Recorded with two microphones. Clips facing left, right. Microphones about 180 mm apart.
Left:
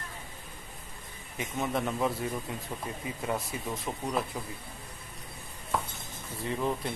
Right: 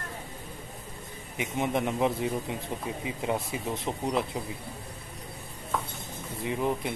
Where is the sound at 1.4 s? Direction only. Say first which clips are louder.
Right 3 dB; 20° right (ahead or behind).